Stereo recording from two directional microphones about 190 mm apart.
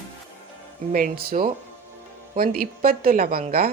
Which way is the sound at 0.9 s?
50° right (ahead or behind).